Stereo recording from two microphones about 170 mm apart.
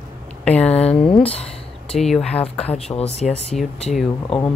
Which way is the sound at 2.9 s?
40° left (ahead or behind).